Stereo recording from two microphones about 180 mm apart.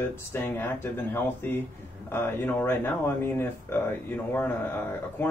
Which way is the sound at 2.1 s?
10° left (ahead or behind).